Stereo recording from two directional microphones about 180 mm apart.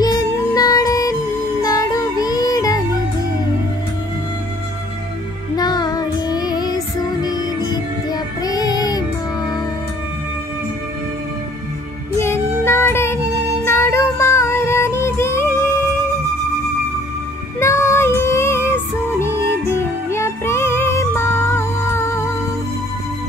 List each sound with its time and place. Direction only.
0.0 s music: 20° left (ahead or behind)
5.6 s child singing: 20° left (ahead or behind)
12.2 s child singing: 15° left (ahead or behind)
13.7 s music: 15° left (ahead or behind)
17.6 s music: 15° left (ahead or behind)